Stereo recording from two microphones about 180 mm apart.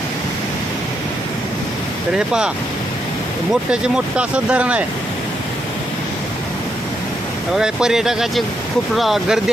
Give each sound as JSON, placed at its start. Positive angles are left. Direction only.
{"t": 2.1, "sound": "speech", "side_deg": -5}
{"t": 3.5, "sound": "speech", "side_deg": -5}
{"t": 7.5, "sound": "speech", "side_deg": -5}